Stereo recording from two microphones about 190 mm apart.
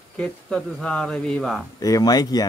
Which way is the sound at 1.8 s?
20° left (ahead or behind).